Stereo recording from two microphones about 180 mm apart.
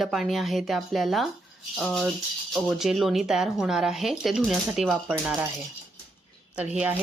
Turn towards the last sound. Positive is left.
turn(degrees=-10)  # may be behind; listen again after turning